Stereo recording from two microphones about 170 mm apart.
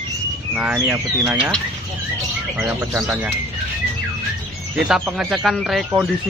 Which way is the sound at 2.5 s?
15° right (ahead or behind).